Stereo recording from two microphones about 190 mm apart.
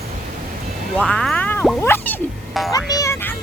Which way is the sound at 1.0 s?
5° left (ahead or behind).